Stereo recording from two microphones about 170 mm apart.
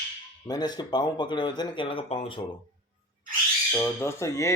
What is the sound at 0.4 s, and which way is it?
Speech, 25° left (ahead or behind).